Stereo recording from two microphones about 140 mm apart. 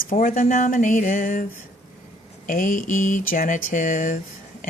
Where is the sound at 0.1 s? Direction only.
75° left (ahead or behind).